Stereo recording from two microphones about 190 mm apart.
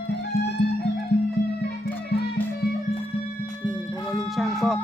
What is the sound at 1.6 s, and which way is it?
Music, 60° left (ahead or behind).